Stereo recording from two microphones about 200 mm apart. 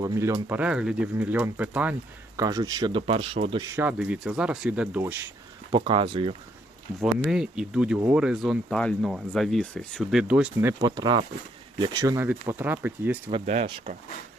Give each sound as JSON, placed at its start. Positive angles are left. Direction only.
{"t": 0.0, "sound": "speech", "side_deg": -15}
{"t": 2.3, "sound": "speech", "side_deg": -20}
{"t": 3.6, "sound": "speech", "side_deg": -15}
{"t": 5.7, "sound": "speech", "side_deg": -25}
{"t": 7.0, "sound": "speech", "side_deg": -5}
{"t": 10.8, "sound": "speech", "side_deg": -20}
{"t": 13.4, "sound": "speech", "side_deg": -40}